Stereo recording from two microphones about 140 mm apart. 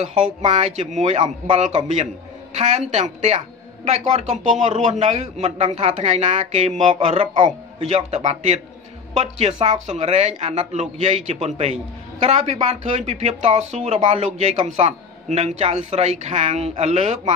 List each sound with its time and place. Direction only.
0.0 s a woman's voice: 55° right (ahead or behind)